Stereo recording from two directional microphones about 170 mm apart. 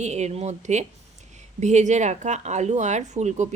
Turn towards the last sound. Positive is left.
turn(degrees=-45)  # may be behind; listen again after turning